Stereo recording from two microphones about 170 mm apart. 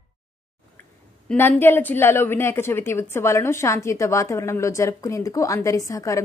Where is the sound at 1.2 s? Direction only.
10° left (ahead or behind).